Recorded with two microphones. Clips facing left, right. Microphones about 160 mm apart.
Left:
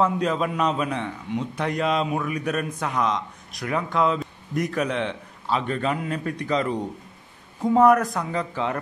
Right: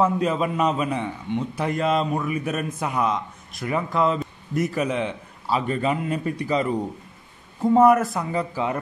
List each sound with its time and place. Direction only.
0.0 s a man's voice: 5° right (ahead or behind)